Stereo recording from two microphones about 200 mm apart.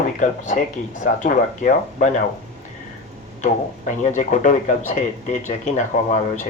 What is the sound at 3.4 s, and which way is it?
Speech, 40° left (ahead or behind).